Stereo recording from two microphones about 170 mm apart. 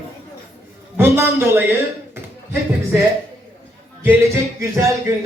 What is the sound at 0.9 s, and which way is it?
Speech, 15° right (ahead or behind).